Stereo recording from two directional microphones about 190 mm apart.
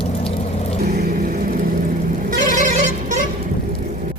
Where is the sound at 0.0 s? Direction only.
30° left (ahead or behind).